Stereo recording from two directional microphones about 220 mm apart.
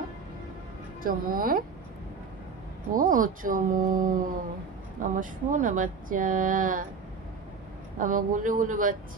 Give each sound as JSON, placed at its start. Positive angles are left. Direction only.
{"t": 1.0, "sound": "speech", "side_deg": -40}
{"t": 2.9, "sound": "speech", "side_deg": -40}
{"t": 8.0, "sound": "speech", "side_deg": -35}